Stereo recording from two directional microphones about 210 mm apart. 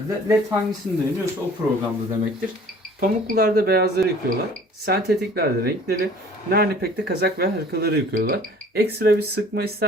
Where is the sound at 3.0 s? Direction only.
45° right (ahead or behind).